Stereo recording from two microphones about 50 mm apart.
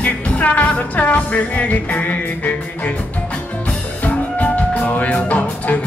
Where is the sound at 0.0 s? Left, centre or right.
Left.